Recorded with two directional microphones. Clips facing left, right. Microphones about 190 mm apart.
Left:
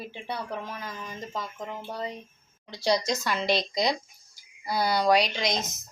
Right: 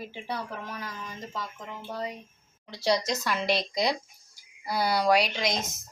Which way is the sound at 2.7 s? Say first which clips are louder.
Left 1 dB; 5° right (ahead or behind).